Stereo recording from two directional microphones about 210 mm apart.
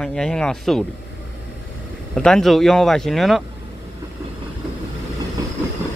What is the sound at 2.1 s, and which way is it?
Speech, centre (ahead or behind).